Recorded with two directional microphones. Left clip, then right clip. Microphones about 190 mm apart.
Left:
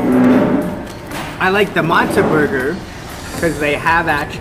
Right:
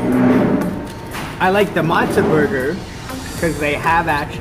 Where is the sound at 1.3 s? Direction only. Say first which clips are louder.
Even; 15° right (ahead or behind).